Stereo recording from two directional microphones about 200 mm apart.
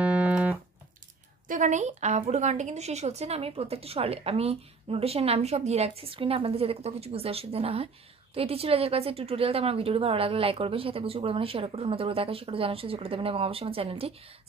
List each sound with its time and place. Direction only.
0.0 s music: 5° right (ahead or behind)
1.5 s a woman's voice: 40° right (ahead or behind)